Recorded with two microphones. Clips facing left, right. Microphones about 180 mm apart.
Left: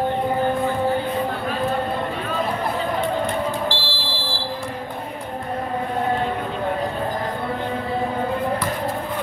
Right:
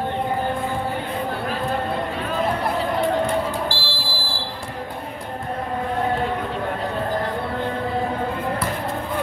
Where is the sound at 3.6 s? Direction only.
20° left (ahead or behind).